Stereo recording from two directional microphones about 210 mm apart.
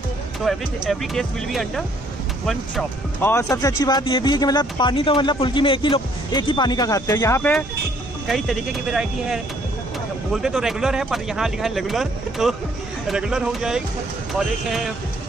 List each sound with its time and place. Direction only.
0.5 s speech: centre (ahead or behind)
8.3 s speech: centre (ahead or behind)